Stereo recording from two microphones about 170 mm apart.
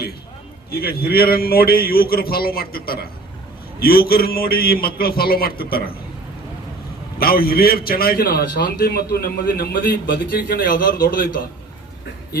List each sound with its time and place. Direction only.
0.7 s a man's voice: 65° left (ahead or behind)
7.2 s a man's voice: 60° left (ahead or behind)